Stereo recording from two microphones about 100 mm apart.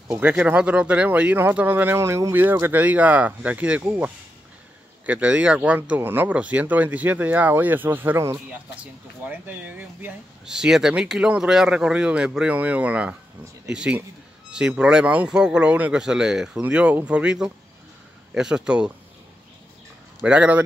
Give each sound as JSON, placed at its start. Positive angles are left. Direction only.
{"t": 0.2, "sound": "speech", "side_deg": -15}
{"t": 5.0, "sound": "speech", "side_deg": -10}
{"t": 10.4, "sound": "speech", "side_deg": -5}
{"t": 20.2, "sound": "speech", "side_deg": -10}